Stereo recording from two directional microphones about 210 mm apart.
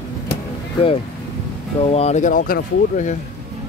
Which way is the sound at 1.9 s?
30° left (ahead or behind).